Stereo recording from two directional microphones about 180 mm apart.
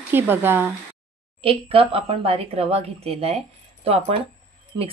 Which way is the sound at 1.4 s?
30° right (ahead or behind).